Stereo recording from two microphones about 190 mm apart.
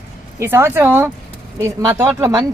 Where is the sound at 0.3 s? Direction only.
15° right (ahead or behind).